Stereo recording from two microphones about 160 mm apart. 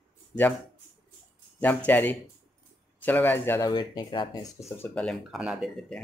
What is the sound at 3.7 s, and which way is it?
Speech, 30° left (ahead or behind).